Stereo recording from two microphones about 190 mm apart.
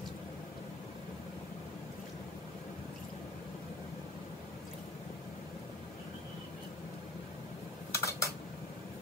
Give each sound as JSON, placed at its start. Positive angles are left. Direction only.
{"t": 7.9, "sound": "dishes", "side_deg": 15}